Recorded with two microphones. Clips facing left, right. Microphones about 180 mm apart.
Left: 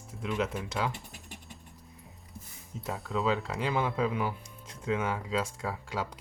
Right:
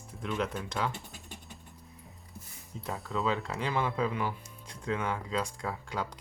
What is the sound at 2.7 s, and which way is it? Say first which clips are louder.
Speech: left 2 dB; centre (ahead or behind).